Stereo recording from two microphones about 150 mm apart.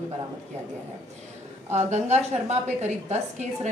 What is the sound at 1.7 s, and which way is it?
A woman's voice, 50° right (ahead or behind).